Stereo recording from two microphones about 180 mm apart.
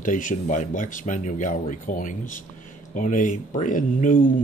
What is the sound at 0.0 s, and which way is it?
Speech, 45° left (ahead or behind).